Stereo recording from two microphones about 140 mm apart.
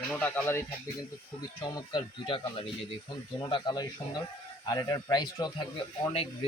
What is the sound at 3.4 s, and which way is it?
Speech, 35° left (ahead or behind).